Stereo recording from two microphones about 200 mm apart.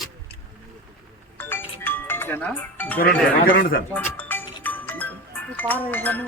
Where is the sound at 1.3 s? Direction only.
10° left (ahead or behind).